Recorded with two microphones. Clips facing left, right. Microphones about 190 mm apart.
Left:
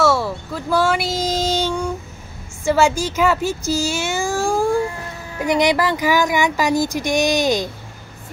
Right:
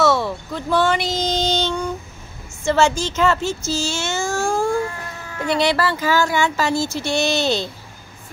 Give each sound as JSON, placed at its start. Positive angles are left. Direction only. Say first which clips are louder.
{"t": 0.0, "sound": "child singing", "louder": "even", "side_deg": 5}
{"t": 2.6, "sound": "speech", "louder": "left 1 dB", "side_deg": 10}